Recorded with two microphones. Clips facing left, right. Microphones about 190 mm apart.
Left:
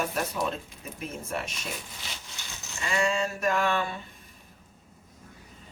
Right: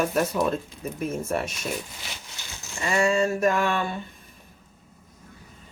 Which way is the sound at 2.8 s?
45° right (ahead or behind).